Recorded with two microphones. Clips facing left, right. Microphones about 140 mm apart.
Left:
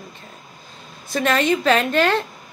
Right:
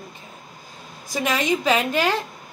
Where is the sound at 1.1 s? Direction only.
15° right (ahead or behind).